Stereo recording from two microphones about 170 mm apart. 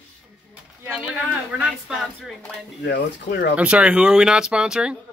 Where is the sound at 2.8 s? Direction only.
85° left.